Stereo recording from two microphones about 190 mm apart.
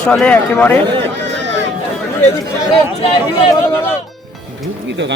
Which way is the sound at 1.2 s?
70° right (ahead or behind).